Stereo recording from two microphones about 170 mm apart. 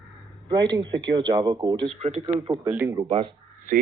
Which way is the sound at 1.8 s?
40° right (ahead or behind).